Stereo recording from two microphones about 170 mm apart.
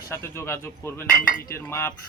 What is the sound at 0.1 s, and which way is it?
A man's voice, 15° left (ahead or behind).